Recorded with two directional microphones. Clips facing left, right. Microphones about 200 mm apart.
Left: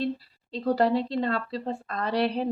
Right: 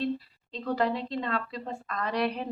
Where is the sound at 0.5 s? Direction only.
35° left (ahead or behind).